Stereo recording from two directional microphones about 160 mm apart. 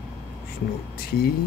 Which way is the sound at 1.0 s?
75° left (ahead or behind).